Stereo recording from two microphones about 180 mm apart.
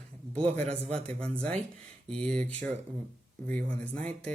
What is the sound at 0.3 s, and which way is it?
Speech, 5° left (ahead or behind).